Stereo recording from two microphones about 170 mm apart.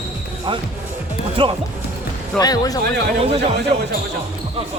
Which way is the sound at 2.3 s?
20° left (ahead or behind).